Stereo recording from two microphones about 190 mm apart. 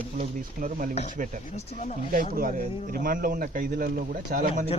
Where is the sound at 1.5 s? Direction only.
35° left (ahead or behind).